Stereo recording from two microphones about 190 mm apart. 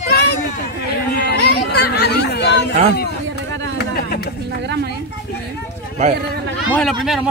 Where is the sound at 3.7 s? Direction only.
55° left (ahead or behind).